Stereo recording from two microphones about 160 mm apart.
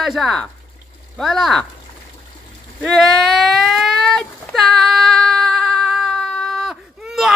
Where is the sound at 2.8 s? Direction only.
Centre (ahead or behind).